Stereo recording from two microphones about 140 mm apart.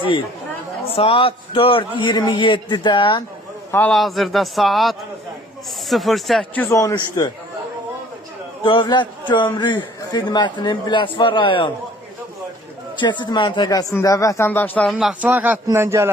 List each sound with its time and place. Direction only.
0.9 s a man's voice: 40° left (ahead or behind)
3.7 s a man's voice: 15° left (ahead or behind)
3.9 s speech: centre (ahead or behind)
6.7 s speech: 25° left (ahead or behind)
8.6 s a man's voice: 35° left (ahead or behind)
13.0 s speech: 35° left (ahead or behind); by 14.8 s 15° left (ahead or behind)
14.8 s a man's voice: centre (ahead or behind); by 16.1 s 20° right (ahead or behind)